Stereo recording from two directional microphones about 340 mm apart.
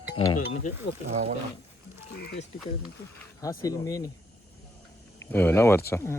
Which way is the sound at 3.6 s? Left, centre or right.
Centre.